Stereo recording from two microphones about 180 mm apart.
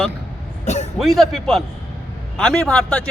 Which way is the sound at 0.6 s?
40° left (ahead or behind).